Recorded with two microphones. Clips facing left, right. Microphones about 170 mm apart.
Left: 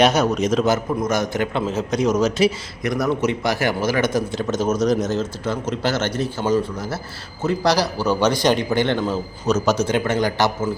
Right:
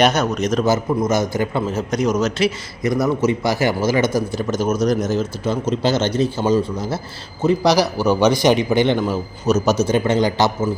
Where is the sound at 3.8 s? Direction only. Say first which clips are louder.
Right 2 dB; 15° left (ahead or behind).